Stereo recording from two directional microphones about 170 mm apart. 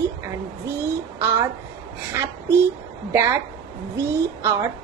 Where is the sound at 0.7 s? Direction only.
15° right (ahead or behind).